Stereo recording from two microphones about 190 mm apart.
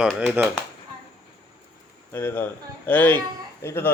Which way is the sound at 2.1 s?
10° left (ahead or behind).